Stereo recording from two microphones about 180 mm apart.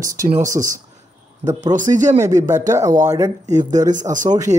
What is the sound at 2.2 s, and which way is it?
Speech, 15° right (ahead or behind).